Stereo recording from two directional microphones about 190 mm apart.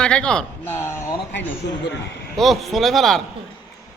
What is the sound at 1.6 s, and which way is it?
Speech, 60° left (ahead or behind).